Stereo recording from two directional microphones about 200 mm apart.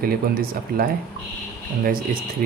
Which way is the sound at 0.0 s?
50° right (ahead or behind).